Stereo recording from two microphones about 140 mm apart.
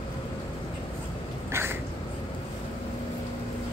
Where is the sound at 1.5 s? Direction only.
15° right (ahead or behind).